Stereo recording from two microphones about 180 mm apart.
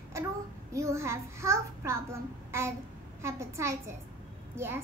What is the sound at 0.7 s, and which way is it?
A child's voice, 15° right (ahead or behind).